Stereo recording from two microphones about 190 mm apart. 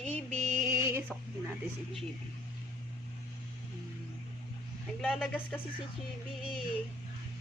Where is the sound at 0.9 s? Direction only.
10° right (ahead or behind).